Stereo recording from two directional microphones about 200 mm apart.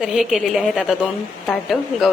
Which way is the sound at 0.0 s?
5° right (ahead or behind).